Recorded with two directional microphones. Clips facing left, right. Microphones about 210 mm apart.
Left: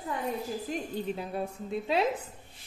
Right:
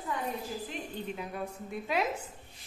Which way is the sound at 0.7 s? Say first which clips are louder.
Left 5 dB; 30° left (ahead or behind).